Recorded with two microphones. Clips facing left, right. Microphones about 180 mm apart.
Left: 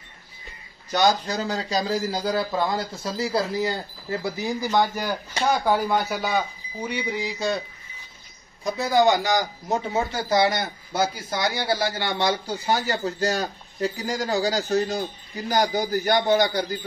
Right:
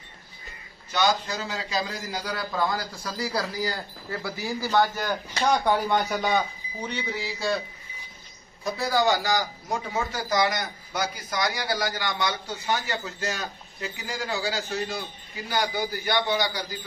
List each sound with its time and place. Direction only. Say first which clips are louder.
0.9 s a man's voice: left 4 dB; 40° left (ahead or behind); by 7.6 s 20° left (ahead or behind)
8.6 s a man's voice: left 4 dB; 20° left (ahead or behind); by 16.8 s 50° left (ahead or behind)